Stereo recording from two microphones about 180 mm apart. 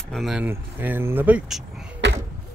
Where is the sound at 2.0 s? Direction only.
75° right (ahead or behind).